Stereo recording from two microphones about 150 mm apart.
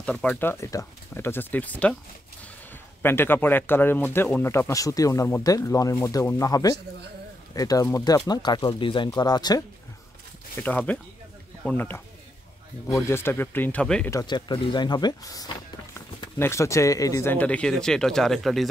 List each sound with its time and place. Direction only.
0.0 s speech: 5° left (ahead or behind)
3.0 s speech: 15° left (ahead or behind)
10.6 s speech: 10° left (ahead or behind)
14.1 s speech: 30° left (ahead or behind); by 18.7 s centre (ahead or behind)